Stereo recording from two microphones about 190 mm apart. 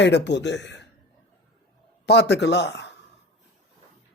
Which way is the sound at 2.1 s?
60° left (ahead or behind).